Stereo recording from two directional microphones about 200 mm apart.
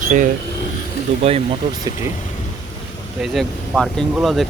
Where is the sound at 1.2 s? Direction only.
30° right (ahead or behind).